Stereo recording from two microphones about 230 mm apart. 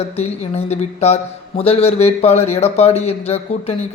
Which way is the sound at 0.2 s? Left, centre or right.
Left.